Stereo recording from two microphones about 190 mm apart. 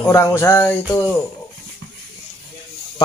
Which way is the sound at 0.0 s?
15° left (ahead or behind).